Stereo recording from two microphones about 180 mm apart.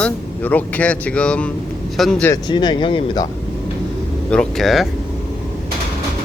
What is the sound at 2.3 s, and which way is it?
Speech, 25° left (ahead or behind).